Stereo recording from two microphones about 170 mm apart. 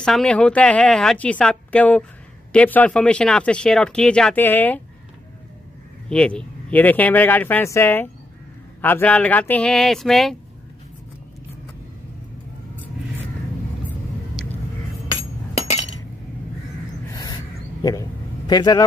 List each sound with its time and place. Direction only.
0.0 s speech: 5° left (ahead or behind)
6.0 s speech: 5° left (ahead or behind)
17.1 s a sound: 20° left (ahead or behind)
18.5 s speech: 25° left (ahead or behind)